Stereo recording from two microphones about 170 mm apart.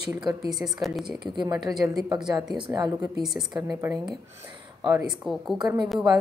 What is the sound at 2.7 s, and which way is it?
Speech, 25° right (ahead or behind).